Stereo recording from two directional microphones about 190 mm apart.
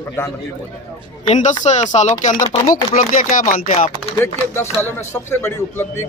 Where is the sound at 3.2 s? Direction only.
45° left (ahead or behind).